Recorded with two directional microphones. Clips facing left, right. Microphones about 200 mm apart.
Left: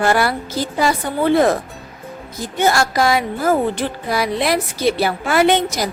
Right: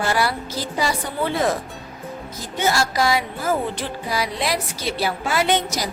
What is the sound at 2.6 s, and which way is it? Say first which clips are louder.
Speech: left 4 dB; 55° left (ahead or behind).